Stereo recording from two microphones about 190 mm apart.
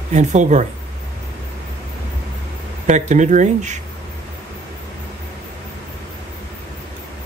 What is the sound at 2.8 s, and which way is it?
Speech, 40° right (ahead or behind).